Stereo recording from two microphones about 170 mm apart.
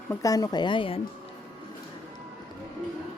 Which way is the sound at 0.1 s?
20° left (ahead or behind).